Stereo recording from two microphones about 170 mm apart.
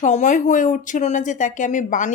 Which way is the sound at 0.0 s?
45° left (ahead or behind).